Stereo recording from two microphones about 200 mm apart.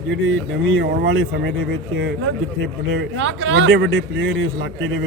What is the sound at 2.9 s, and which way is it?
A man's voice, 70° right (ahead or behind).